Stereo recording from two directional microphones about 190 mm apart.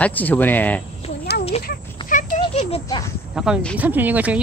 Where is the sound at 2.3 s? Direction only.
30° left (ahead or behind).